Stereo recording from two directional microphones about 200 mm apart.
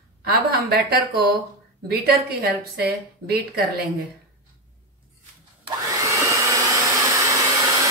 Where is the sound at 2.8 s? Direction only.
50° right (ahead or behind).